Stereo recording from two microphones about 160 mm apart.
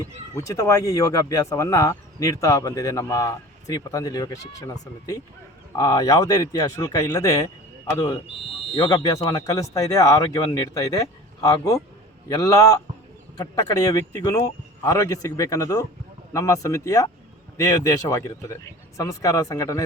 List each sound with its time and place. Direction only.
0.3 s speech: 20° left (ahead or behind)